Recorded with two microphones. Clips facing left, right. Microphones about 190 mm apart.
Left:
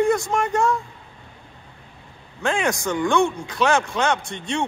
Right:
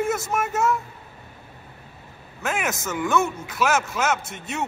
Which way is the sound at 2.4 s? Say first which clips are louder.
Left 5 dB; 5° right (ahead or behind).